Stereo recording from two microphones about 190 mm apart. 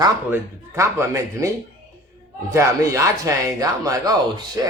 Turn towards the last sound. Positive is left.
turn(degrees=-15)  # may be behind; listen again after turning